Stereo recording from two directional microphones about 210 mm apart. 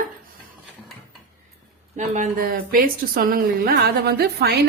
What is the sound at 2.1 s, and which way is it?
A woman's voice, 40° right (ahead or behind).